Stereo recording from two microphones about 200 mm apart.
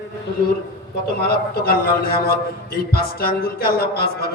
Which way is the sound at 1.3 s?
50° left (ahead or behind).